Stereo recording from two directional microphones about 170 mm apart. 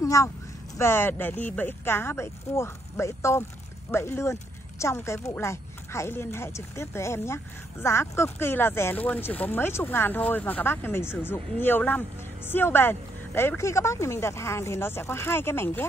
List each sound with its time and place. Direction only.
0.0 s speech: 20° left (ahead or behind)